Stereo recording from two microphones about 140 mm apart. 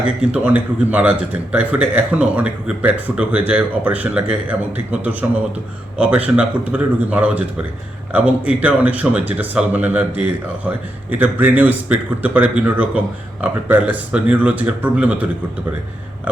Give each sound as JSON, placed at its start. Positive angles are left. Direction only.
{"t": 0.4, "sound": "speech", "side_deg": -10}